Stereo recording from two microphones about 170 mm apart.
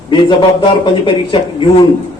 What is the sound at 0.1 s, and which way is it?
A man's voice, 30° left (ahead or behind).